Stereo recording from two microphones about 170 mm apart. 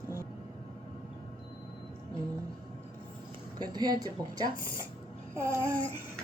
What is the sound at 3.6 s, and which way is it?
Speech, 25° right (ahead or behind).